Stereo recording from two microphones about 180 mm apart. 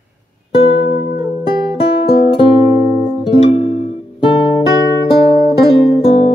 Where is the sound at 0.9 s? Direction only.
45° left (ahead or behind).